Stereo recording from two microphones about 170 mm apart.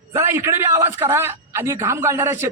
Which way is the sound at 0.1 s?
15° right (ahead or behind).